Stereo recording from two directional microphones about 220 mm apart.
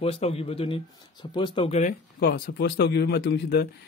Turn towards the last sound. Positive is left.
turn(degrees=50)  # may be behind; listen again after turning